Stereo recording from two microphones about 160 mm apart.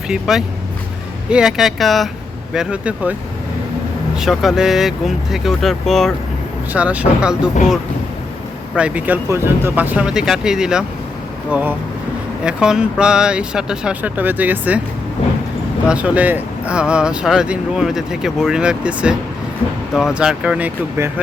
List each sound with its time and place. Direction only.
0.1 s speech: 5° right (ahead or behind)
6.7 s speech: 10° right (ahead or behind)
8.7 s speech: 10° right (ahead or behind)
15.9 s speech: 10° right (ahead or behind)